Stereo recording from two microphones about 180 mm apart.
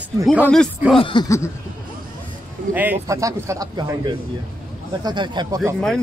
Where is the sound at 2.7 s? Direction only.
10° right (ahead or behind).